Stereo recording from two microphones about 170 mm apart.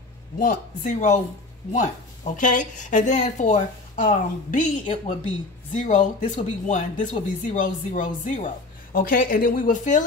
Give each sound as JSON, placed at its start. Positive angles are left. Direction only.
{"t": 0.4, "sound": "speech", "side_deg": 50}